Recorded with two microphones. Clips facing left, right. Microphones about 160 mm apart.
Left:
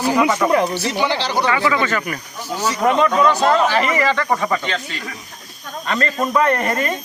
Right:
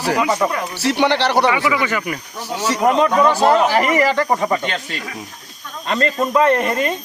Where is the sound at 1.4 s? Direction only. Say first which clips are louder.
Even; 15° right (ahead or behind).